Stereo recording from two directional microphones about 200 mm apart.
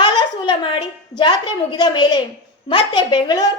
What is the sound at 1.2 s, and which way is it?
A child's voice, 20° left (ahead or behind).